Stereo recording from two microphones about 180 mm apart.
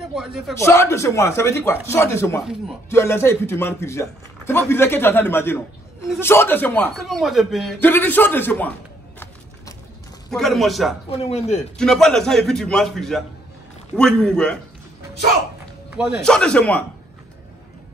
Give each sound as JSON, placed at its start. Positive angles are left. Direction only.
{"t": 0.1, "sound": "a man's voice", "side_deg": -5}
{"t": 0.6, "sound": "a man's voice", "side_deg": 15}
{"t": 7.0, "sound": "a man's voice", "side_deg": 0}
{"t": 7.8, "sound": "a man's voice", "side_deg": 10}
{"t": 10.3, "sound": "a man's voice", "side_deg": 0}
{"t": 11.1, "sound": "speech", "side_deg": 35}
{"t": 11.8, "sound": "a man's voice", "side_deg": 5}
{"t": 15.9, "sound": "a man's voice", "side_deg": -5}
{"t": 16.3, "sound": "a man's voice", "side_deg": 5}